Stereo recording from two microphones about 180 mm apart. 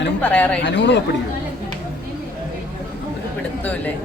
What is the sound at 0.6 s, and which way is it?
Speech, 75° left (ahead or behind).